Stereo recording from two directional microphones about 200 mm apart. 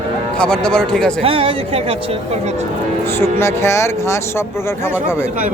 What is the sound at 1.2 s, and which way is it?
Speech, 30° right (ahead or behind).